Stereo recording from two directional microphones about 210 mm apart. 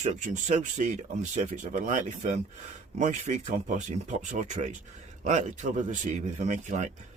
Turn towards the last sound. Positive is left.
turn(degrees=-35)  # may be behind; listen again after turning